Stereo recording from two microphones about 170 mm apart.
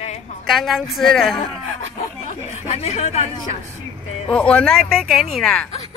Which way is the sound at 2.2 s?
40° left (ahead or behind).